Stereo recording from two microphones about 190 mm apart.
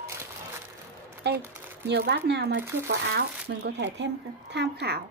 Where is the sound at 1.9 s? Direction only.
60° right (ahead or behind).